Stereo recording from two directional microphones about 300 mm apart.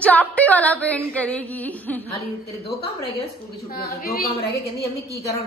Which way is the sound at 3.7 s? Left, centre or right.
Left.